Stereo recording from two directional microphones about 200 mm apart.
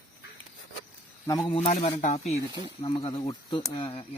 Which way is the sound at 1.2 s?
20° left (ahead or behind).